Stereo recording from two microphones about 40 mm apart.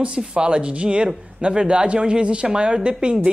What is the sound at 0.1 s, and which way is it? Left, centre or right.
Speech, right.